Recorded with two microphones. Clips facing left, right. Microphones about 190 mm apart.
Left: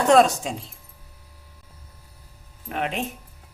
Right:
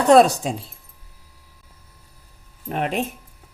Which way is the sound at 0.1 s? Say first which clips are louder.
Right 4 dB; 35° right (ahead or behind).